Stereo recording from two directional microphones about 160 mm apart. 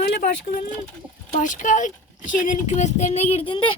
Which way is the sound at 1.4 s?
55° left (ahead or behind).